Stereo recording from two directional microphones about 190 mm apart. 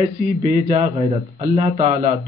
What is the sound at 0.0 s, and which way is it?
Speech, 35° right (ahead or behind).